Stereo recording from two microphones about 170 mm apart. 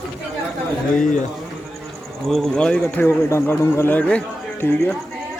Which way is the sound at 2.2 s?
Centre (ahead or behind).